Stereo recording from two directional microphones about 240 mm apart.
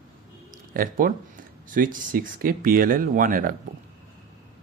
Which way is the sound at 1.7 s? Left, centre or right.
Right.